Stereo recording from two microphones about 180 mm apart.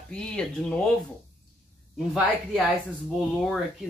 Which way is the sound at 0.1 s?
5° left (ahead or behind).